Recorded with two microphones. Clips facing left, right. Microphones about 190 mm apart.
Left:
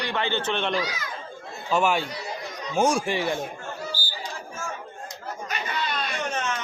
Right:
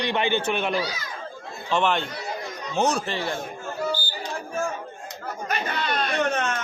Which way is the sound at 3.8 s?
55° right (ahead or behind).